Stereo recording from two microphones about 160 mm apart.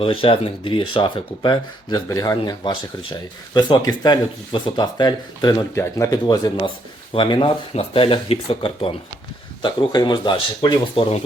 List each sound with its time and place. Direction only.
0.0 s speech: 35° left (ahead or behind)